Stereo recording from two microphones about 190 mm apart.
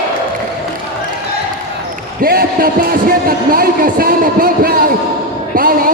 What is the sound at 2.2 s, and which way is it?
A man's voice, 50° right (ahead or behind).